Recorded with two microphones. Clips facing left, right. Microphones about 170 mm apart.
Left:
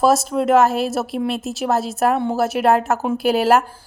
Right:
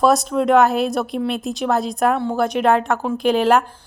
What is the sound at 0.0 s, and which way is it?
A woman's voice, 5° left (ahead or behind).